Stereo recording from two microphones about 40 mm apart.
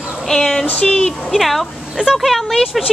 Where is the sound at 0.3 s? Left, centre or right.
Centre.